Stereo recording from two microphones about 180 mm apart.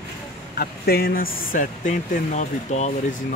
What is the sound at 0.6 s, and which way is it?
A man's voice, 60° left (ahead or behind).